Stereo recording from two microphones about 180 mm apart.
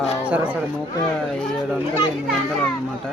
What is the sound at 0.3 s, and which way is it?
Speech, 10° right (ahead or behind).